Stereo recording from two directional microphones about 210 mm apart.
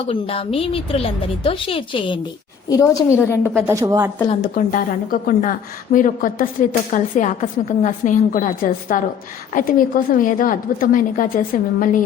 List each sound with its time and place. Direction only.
0.1 s a woman's voice: 25° left (ahead or behind); by 3.6 s 10° left (ahead or behind)
3.7 s speech: 15° right (ahead or behind)
4.5 s a woman's voice: 40° left (ahead or behind)